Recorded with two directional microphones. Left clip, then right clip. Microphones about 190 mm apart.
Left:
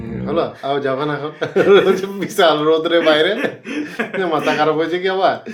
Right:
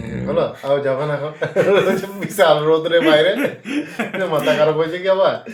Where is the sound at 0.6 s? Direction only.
40° left (ahead or behind).